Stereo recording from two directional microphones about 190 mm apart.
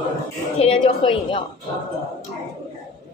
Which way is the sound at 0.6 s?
30° left (ahead or behind).